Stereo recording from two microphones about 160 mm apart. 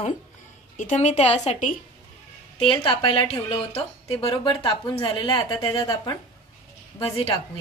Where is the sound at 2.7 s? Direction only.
30° left (ahead or behind).